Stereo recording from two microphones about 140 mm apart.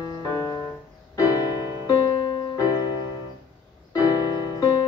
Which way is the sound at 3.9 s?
25° left (ahead or behind).